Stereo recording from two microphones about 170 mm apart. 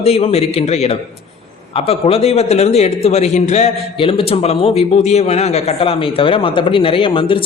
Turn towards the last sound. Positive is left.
turn(degrees=30)  # may be behind; listen again after turning